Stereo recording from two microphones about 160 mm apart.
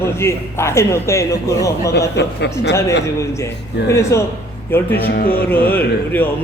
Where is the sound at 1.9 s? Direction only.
90° left.